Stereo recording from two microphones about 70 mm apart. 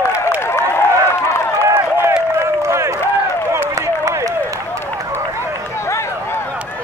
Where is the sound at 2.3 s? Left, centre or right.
Right.